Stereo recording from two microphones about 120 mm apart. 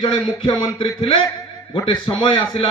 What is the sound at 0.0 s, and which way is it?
Speech, 50° left (ahead or behind).